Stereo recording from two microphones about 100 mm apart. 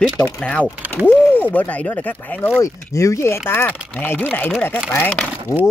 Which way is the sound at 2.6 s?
30° left (ahead or behind).